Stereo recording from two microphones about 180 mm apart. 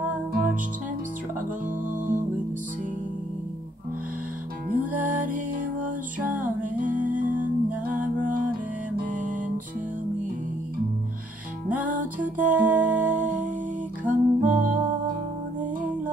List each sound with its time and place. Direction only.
1.9 s music: 50° right (ahead or behind)
4.6 s music: 50° right (ahead or behind)
11.8 s music: 50° right (ahead or behind)
12.4 s music: 10° right (ahead or behind)
14.0 s music: 50° right (ahead or behind)